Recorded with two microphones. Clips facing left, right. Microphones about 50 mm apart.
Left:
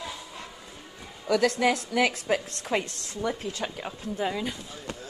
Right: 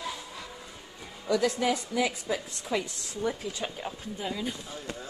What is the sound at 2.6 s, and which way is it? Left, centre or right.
Speech, left.